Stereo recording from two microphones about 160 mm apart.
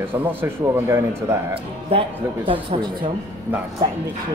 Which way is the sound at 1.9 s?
35° right (ahead or behind).